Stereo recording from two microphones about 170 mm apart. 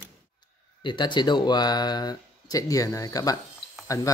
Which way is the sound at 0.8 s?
25° left (ahead or behind).